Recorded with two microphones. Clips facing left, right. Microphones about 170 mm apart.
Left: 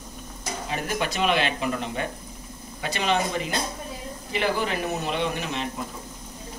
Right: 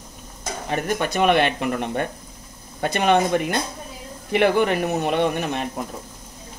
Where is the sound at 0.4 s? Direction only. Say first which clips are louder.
Right 4 dB; 50° right (ahead or behind).